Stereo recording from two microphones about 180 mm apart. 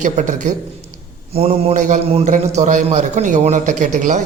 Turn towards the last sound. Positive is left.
turn(degrees=-45)  # may be behind; listen again after turning